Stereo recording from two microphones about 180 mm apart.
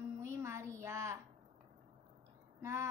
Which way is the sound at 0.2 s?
15° right (ahead or behind).